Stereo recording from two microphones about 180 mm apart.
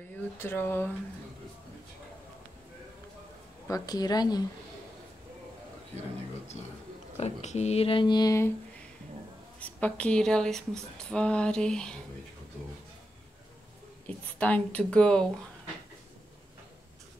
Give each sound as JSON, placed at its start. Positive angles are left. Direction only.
{"t": 0.4, "sound": "speech", "side_deg": 10}
{"t": 3.6, "sound": "speech", "side_deg": 20}
{"t": 7.2, "sound": "speech", "side_deg": 40}
{"t": 9.6, "sound": "a woman's voice", "side_deg": 10}
{"t": 14.0, "sound": "speech", "side_deg": 10}